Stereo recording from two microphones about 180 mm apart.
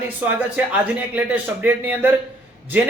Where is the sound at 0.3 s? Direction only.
10° right (ahead or behind).